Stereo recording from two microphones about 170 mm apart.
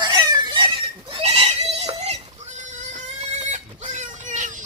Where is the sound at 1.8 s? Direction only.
40° right (ahead or behind).